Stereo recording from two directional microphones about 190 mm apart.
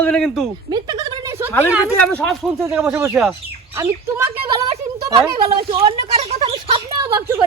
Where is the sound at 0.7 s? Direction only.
20° right (ahead or behind).